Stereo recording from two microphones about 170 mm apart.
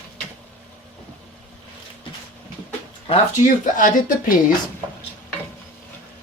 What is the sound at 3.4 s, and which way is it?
Speech, 50° left (ahead or behind).